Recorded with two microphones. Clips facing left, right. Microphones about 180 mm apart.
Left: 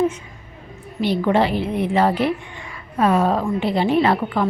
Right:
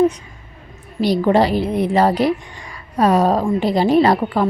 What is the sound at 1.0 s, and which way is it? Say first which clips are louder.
A woman's voice: right 3 dB; 35° right (ahead or behind).